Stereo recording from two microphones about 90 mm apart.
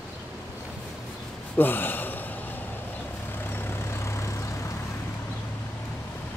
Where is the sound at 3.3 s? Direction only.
25° left (ahead or behind).